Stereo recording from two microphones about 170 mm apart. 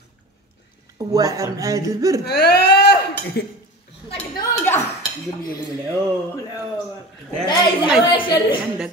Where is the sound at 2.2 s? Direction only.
75° left (ahead or behind).